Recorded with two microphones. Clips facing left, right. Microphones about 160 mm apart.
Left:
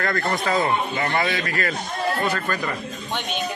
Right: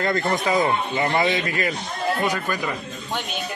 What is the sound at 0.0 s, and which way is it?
A woman's voice, 20° right (ahead or behind).